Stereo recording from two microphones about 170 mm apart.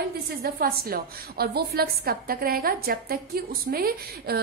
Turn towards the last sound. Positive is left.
turn(degrees=-65)  # may be behind; listen again after turning